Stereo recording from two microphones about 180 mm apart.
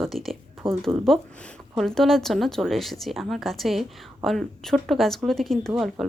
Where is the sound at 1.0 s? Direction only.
5° left (ahead or behind).